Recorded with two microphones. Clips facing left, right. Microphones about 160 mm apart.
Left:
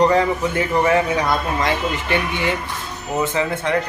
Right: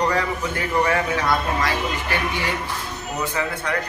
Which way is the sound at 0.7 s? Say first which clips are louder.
Left 3 dB; 20° left (ahead or behind).